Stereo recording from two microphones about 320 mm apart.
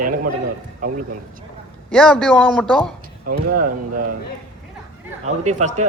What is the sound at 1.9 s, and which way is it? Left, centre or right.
Speech, centre.